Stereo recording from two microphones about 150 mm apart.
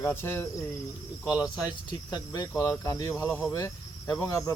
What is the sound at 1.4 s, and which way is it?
Speech, 30° left (ahead or behind).